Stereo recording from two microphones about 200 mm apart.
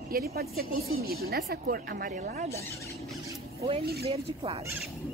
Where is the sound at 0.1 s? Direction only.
50° right (ahead or behind).